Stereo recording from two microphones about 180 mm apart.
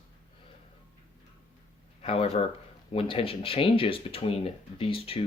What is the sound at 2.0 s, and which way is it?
Speech, 35° left (ahead or behind).